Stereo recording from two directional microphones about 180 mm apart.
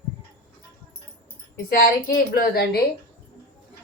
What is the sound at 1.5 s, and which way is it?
A woman's voice, 50° left (ahead or behind).